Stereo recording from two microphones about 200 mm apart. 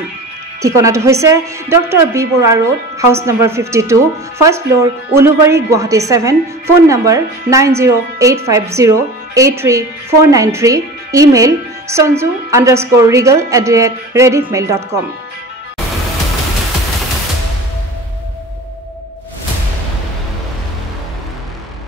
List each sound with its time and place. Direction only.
0.6 s a woman's voice: 15° right (ahead or behind)